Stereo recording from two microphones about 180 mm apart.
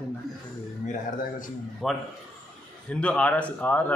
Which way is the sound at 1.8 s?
Centre (ahead or behind).